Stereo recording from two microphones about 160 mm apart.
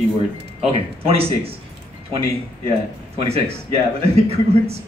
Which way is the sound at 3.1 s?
40° right (ahead or behind).